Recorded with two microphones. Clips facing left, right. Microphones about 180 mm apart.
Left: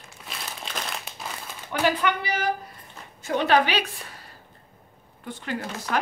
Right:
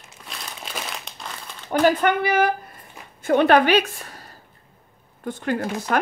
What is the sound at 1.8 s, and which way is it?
A woman's voice, 50° right (ahead or behind).